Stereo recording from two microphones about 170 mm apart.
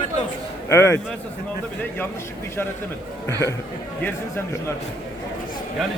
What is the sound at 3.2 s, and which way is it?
A man's voice, 15° left (ahead or behind).